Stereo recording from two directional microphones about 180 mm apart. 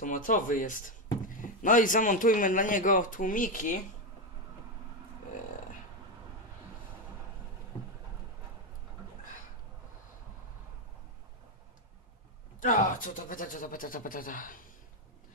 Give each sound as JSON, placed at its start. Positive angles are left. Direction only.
{"t": 0.0, "sound": "speech", "side_deg": 45}
{"t": 12.5, "sound": "speech", "side_deg": 45}